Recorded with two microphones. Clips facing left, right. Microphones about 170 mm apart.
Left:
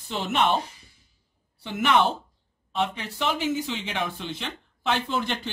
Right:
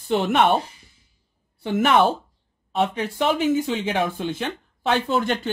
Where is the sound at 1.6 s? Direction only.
50° right (ahead or behind).